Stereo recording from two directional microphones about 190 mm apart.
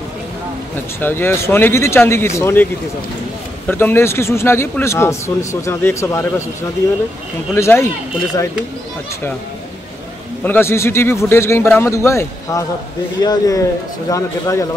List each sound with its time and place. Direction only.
1.0 s speech: 10° left (ahead or behind)
7.5 s speech: 15° left (ahead or behind)
10.4 s a man's voice: 10° left (ahead or behind)